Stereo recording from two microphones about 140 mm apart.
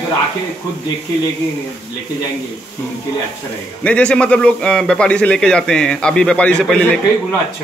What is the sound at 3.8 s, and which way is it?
A man's voice, 10° left (ahead or behind).